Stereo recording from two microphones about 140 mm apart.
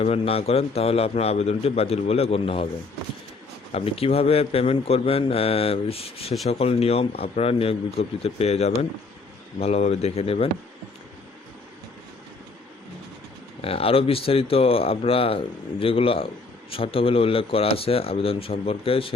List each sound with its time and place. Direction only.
0.0 s speech: 45° left (ahead or behind)
3.7 s speech: 45° left (ahead or behind)
13.6 s a man's voice: 45° left (ahead or behind)